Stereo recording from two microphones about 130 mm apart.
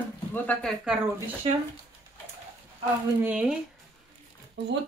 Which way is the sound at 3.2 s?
10° right (ahead or behind).